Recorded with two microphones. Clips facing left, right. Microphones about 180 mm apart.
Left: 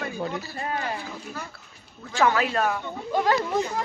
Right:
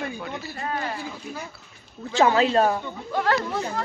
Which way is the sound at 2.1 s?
25° right (ahead or behind).